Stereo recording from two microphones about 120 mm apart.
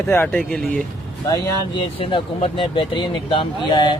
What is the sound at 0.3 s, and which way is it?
Speech, 5° left (ahead or behind).